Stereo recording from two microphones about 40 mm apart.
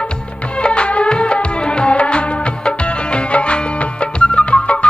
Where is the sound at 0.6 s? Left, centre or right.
Left.